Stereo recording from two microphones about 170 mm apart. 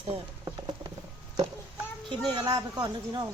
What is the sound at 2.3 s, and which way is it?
Speech, 25° right (ahead or behind).